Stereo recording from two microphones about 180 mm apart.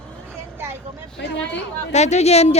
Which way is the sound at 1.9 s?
40° left (ahead or behind).